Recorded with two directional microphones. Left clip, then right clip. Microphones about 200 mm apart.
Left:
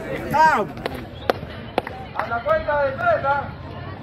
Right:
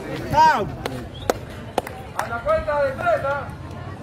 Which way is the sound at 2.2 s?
70° right (ahead or behind).